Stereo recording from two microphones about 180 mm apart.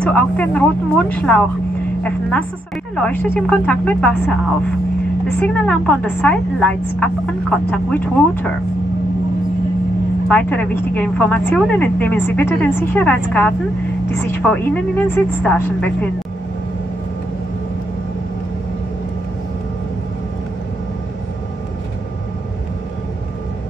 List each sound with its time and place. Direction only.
0.0 s a woman's voice: 10° left (ahead or behind)
3.0 s a woman's voice: 10° left (ahead or behind)
5.4 s a woman's voice: 10° left (ahead or behind)
10.2 s a woman's voice: 5° left (ahead or behind)